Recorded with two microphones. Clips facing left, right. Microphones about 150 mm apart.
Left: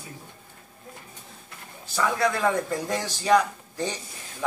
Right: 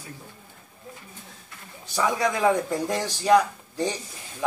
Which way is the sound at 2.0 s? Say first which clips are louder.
Right 1 dB; 10° right (ahead or behind).